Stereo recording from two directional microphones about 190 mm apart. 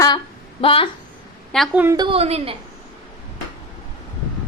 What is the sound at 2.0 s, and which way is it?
Speech, 30° right (ahead or behind).